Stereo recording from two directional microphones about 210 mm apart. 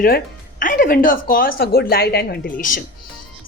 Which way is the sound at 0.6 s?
40° left (ahead or behind).